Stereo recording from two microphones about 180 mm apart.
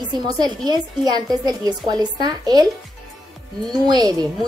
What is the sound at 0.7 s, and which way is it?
Speech, 25° right (ahead or behind).